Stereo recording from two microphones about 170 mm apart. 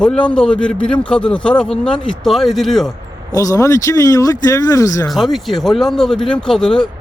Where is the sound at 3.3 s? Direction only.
20° left (ahead or behind).